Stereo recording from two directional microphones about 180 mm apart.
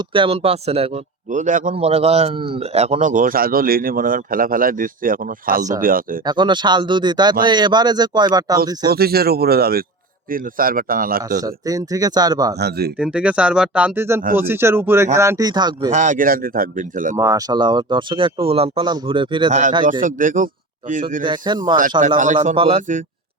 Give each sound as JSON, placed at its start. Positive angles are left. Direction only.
{"t": 0.1, "sound": "speech", "side_deg": -30}
{"t": 1.3, "sound": "speech", "side_deg": -45}
{"t": 1.7, "sound": "speech", "side_deg": -35}
{"t": 6.2, "sound": "speech", "side_deg": -25}
{"t": 8.9, "sound": "speech", "side_deg": -60}
{"t": 11.4, "sound": "speech", "side_deg": -20}
{"t": 12.5, "sound": "speech", "side_deg": -60}
{"t": 13.0, "sound": "speech", "side_deg": -5}
{"t": 15.9, "sound": "speech", "side_deg": -45}
{"t": 17.2, "sound": "speech", "side_deg": -20}
{"t": 19.5, "sound": "speech", "side_deg": -40}
{"t": 21.2, "sound": "speech", "side_deg": -25}